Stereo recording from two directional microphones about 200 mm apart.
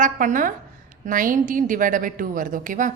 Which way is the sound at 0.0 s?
40° right (ahead or behind).